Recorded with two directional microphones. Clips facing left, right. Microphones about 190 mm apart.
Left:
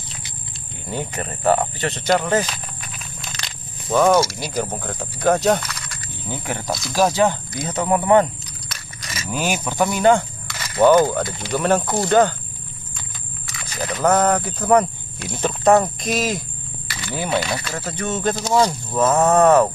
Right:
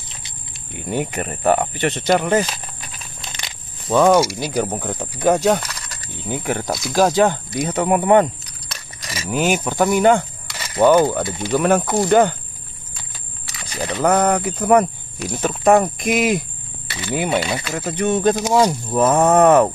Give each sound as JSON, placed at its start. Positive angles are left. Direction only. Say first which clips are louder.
{"t": 0.8, "sound": "speech", "louder": "right 4 dB", "side_deg": -15}
{"t": 3.9, "sound": "speech", "louder": "right 2 dB", "side_deg": -15}
{"t": 5.6, "sound": "a sound", "louder": "even", "side_deg": -40}
{"t": 6.2, "sound": "speech", "louder": "right 4 dB", "side_deg": -15}
{"t": 9.0, "sound": "keys jangling", "louder": "right 3 dB", "side_deg": -35}
{"t": 9.3, "sound": "speech", "louder": "right 4 dB", "side_deg": -15}
{"t": 13.6, "sound": "a sound", "louder": "right 2 dB", "side_deg": -25}
{"t": 14.0, "sound": "speech", "louder": "right 1 dB", "side_deg": -15}